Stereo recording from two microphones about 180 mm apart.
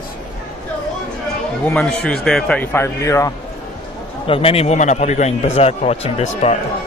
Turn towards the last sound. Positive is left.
turn(degrees=35)  # may be behind; listen again after turning